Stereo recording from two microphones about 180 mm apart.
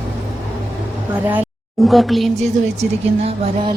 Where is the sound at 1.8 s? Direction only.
Centre (ahead or behind).